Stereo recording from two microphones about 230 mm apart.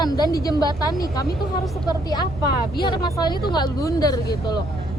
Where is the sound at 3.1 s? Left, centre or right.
Centre.